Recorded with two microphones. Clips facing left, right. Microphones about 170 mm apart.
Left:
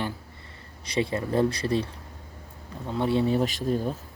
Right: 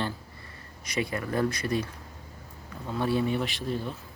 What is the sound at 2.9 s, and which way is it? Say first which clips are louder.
Speech: left 2 dB; 20° left (ahead or behind).